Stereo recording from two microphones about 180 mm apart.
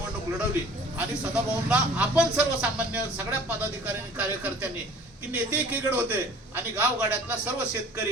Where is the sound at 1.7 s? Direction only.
5° right (ahead or behind).